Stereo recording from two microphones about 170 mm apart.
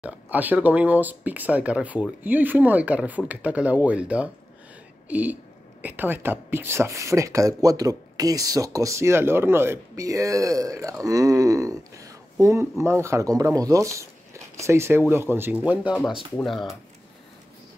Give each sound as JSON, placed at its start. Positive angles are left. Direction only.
{"t": 0.0, "sound": "speech", "side_deg": -10}